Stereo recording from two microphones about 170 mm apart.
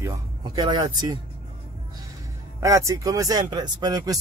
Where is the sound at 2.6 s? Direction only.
20° right (ahead or behind).